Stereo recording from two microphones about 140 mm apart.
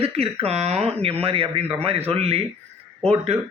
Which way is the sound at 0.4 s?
50° right (ahead or behind).